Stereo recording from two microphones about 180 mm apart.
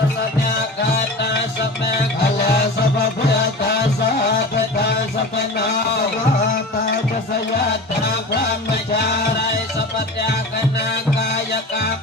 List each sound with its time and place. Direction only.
2.5 s music: 60° left (ahead or behind)
5.5 s music: 65° left (ahead or behind)
8.7 s music: 65° left (ahead or behind)